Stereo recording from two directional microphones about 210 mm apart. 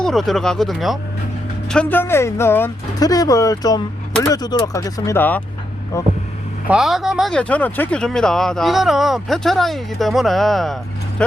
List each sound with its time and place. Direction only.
0.0 s speech: centre (ahead or behind)
6.7 s speech: centre (ahead or behind)